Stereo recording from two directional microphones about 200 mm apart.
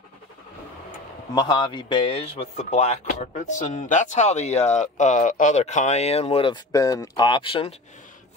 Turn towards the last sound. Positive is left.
turn(degrees=25)  # may be behind; listen again after turning